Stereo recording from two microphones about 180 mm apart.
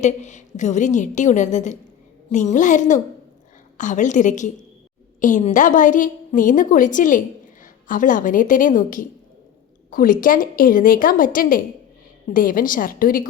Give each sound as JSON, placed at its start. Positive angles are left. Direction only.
{"t": 0.0, "sound": "a woman's voice", "side_deg": 40}